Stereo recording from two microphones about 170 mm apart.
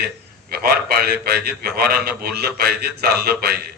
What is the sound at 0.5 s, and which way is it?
A man's voice, 65° right (ahead or behind).